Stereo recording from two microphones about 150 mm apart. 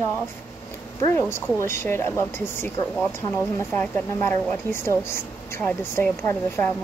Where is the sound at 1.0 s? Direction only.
15° left (ahead or behind).